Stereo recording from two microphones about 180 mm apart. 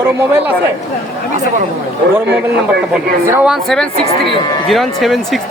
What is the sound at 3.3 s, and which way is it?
A woman's voice, 5° right (ahead or behind).